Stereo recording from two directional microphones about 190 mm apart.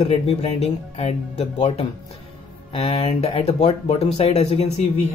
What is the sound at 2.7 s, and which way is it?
Speech, 30° left (ahead or behind).